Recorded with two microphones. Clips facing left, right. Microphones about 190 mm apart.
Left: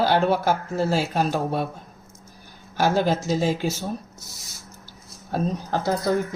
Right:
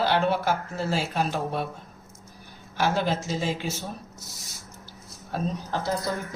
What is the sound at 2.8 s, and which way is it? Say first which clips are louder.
Speech: left 4 dB; 40° left (ahead or behind).